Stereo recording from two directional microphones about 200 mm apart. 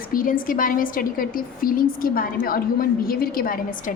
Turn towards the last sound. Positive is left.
turn(degrees=45)  # may be behind; listen again after turning